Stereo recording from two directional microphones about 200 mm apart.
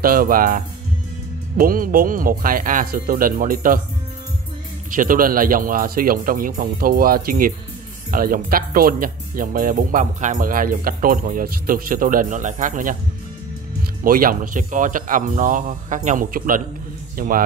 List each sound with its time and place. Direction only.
0.0 s speech: 45° right (ahead or behind)
4.9 s speech: 45° right (ahead or behind)
14.0 s speech: 45° right (ahead or behind)